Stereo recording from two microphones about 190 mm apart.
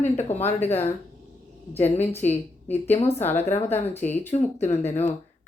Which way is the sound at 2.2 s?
10° left (ahead or behind).